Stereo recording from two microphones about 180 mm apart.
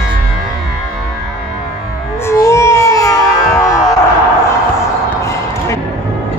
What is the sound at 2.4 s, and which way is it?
Music, 15° left (ahead or behind).